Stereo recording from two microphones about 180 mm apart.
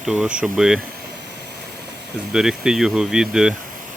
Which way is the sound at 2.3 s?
5° right (ahead or behind).